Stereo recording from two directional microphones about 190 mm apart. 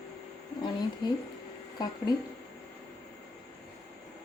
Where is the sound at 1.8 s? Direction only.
20° left (ahead or behind).